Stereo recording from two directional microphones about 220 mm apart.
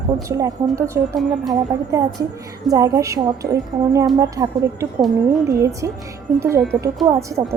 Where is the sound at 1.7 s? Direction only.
15° right (ahead or behind).